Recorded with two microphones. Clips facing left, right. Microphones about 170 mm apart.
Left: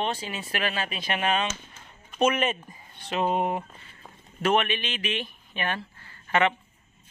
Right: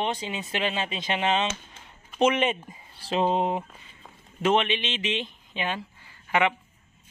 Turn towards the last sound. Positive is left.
turn(degrees=-15)  # may be behind; listen again after turning